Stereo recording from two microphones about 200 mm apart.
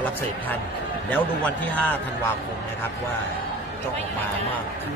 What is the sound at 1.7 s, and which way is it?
Speech, 10° left (ahead or behind).